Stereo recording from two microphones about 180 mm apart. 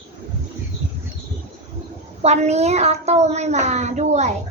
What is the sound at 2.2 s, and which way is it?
A child's voice, 40° right (ahead or behind).